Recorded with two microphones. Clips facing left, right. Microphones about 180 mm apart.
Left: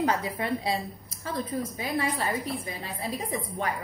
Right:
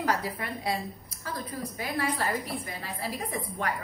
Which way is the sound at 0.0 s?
20° left (ahead or behind).